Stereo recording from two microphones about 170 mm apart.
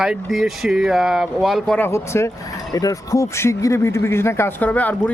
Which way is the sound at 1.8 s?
15° left (ahead or behind).